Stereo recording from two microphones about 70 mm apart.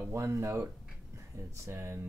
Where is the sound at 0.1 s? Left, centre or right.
Right.